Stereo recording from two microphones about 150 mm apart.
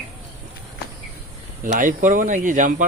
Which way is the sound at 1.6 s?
65° right (ahead or behind).